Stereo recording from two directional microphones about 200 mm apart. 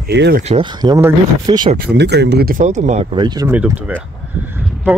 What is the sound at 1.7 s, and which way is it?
Speech, 55° right (ahead or behind).